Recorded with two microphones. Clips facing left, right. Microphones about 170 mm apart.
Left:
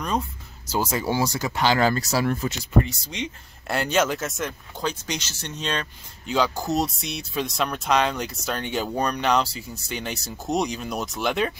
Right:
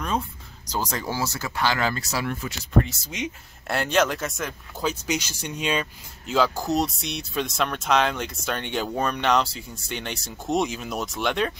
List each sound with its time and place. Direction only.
0.7 s speech: 10° left (ahead or behind)
1.8 s speech: 40° left (ahead or behind)
2.8 s speech: 5° right (ahead or behind)